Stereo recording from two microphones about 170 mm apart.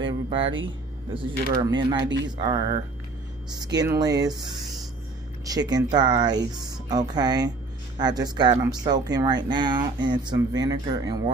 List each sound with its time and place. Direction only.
0.0 s music: 30° right (ahead or behind)
1.6 s speech: 25° right (ahead or behind)